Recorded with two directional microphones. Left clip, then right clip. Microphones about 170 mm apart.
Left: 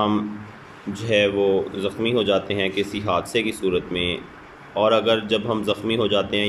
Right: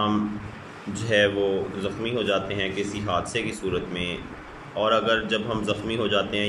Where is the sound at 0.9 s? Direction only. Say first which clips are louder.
Left 2 dB; 20° left (ahead or behind).